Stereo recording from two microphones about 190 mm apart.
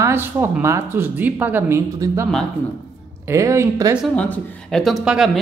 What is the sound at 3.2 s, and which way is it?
Speech, 15° right (ahead or behind).